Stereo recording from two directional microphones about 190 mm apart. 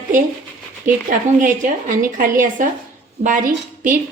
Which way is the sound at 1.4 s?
45° right (ahead or behind).